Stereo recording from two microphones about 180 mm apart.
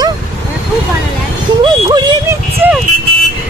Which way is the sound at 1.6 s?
25° right (ahead or behind).